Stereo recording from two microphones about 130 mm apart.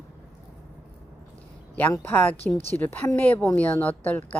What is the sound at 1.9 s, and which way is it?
Speech, 15° left (ahead or behind).